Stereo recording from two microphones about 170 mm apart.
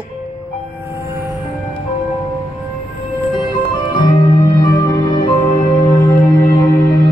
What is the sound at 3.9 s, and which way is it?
Music, 25° left (ahead or behind).